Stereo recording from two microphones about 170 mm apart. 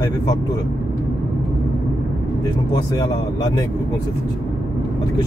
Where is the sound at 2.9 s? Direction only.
25° left (ahead or behind).